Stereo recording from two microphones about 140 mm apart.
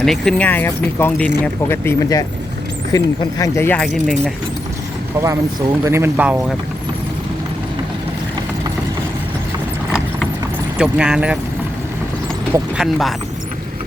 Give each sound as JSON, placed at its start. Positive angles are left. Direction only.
{"t": 0.0, "sound": "speech", "side_deg": 5}
{"t": 3.8, "sound": "speech", "side_deg": 0}
{"t": 5.2, "sound": "speech", "side_deg": -25}
{"t": 10.8, "sound": "speech", "side_deg": -5}
{"t": 12.7, "sound": "speech", "side_deg": 0}